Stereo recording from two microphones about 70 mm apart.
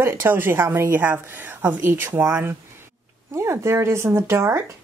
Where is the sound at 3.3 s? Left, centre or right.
Right.